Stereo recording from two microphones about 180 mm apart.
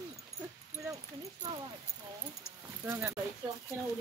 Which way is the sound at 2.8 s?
15° right (ahead or behind).